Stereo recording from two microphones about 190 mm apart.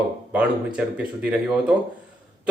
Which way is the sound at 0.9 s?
5° right (ahead or behind).